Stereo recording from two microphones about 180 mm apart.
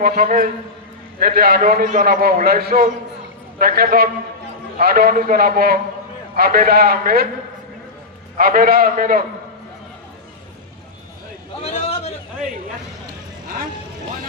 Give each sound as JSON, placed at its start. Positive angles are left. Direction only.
{"t": 0.0, "sound": "a man's voice", "side_deg": -50}
{"t": 8.4, "sound": "a man's voice", "side_deg": -55}
{"t": 11.6, "sound": "a sound", "side_deg": 35}